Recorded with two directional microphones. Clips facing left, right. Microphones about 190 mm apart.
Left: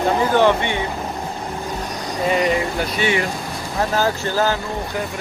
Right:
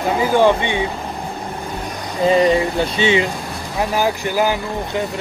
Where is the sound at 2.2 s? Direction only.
30° right (ahead or behind); by 4.6 s 15° right (ahead or behind).